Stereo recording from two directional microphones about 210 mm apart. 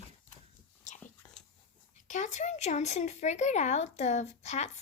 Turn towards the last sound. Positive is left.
turn(degrees=35)  # may be behind; listen again after turning